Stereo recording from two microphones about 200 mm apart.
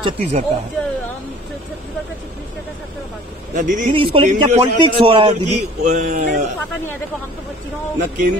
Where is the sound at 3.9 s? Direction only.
25° right (ahead or behind); by 6.4 s 45° right (ahead or behind).